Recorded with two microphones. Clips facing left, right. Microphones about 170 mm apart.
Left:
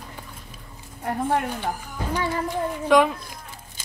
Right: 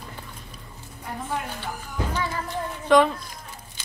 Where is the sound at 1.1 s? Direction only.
60° left (ahead or behind).